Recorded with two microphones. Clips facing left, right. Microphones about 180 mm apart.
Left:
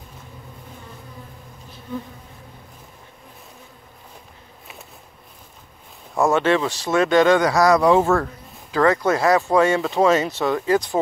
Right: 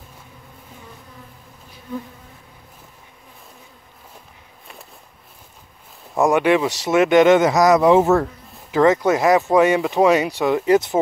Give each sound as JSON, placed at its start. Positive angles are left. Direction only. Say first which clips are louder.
{"t": 6.1, "sound": "speech", "louder": "right 2 dB", "side_deg": -15}